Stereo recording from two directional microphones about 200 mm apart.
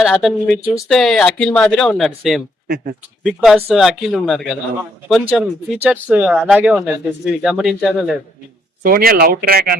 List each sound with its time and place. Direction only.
0.0 s speech: centre (ahead or behind)
8.8 s speech: 50° right (ahead or behind)